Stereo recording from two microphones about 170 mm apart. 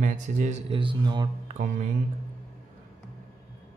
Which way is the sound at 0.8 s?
30° right (ahead or behind).